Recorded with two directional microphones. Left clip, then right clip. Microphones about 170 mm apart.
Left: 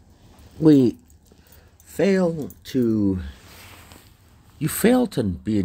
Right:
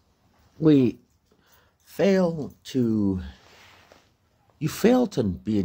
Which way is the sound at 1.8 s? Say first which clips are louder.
Left 1 dB; 20° right (ahead or behind).